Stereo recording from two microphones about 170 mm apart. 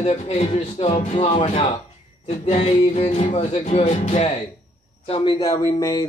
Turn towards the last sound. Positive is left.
turn(degrees=20)  # may be behind; listen again after turning